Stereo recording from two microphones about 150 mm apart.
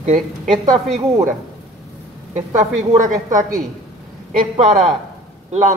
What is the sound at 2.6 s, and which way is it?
Speech, 60° right (ahead or behind).